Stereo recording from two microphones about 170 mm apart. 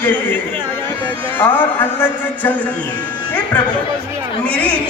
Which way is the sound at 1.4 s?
10° left (ahead or behind).